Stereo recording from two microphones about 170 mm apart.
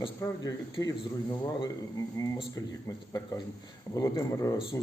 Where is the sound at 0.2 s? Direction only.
20° left (ahead or behind).